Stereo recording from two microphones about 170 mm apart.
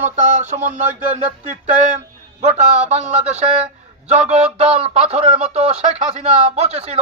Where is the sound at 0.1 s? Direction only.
45° right (ahead or behind).